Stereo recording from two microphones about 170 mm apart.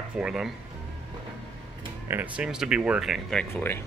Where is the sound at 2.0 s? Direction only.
10° right (ahead or behind).